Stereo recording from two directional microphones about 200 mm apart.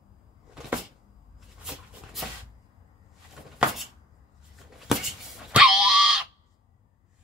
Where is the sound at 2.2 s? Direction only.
Centre (ahead or behind).